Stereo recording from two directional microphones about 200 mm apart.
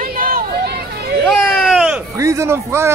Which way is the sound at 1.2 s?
5° left (ahead or behind).